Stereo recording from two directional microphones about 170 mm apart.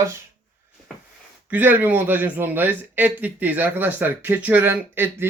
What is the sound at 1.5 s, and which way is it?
A man's voice, 10° right (ahead or behind).